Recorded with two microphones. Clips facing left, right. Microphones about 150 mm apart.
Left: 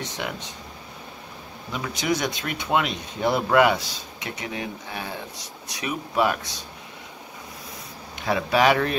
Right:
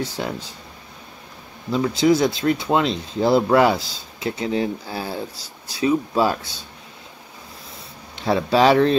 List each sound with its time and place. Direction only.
0.0 s speech: 30° right (ahead or behind)
1.7 s speech: 30° right (ahead or behind)
8.2 s speech: 30° right (ahead or behind)